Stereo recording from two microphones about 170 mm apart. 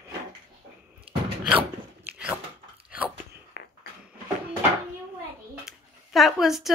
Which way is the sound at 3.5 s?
65° left (ahead or behind).